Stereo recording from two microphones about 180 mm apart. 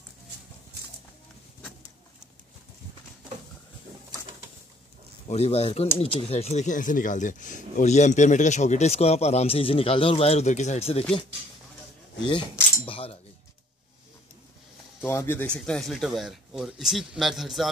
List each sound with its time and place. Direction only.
5.3 s speech: 35° left (ahead or behind)
12.8 s speech: 30° left (ahead or behind)
15.0 s speech: 10° left (ahead or behind)